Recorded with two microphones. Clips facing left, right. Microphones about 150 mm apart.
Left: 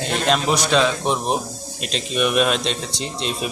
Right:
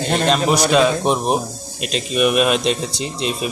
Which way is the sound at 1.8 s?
5° right (ahead or behind).